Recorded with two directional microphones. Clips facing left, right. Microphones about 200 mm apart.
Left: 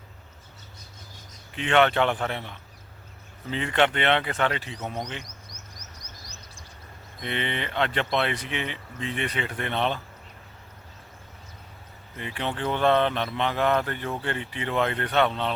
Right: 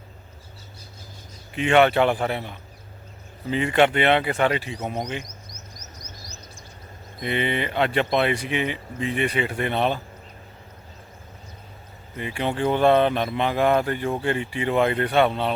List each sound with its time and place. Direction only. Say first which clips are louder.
1.5 s speech: right 4 dB; 10° right (ahead or behind)
6.0 s bird: right 4 dB; 35° left (ahead or behind)
7.2 s speech: right 6 dB; 10° right (ahead or behind)
12.1 s speech: right 5 dB; 10° right (ahead or behind)